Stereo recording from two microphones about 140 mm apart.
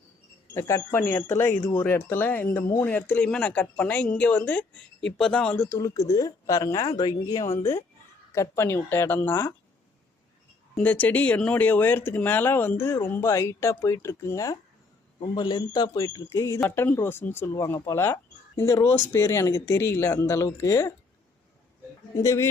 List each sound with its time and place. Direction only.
0.5 s a woman's voice: 20° left (ahead or behind)
10.8 s a woman's voice: 10° left (ahead or behind)
22.2 s a woman's voice: 20° left (ahead or behind)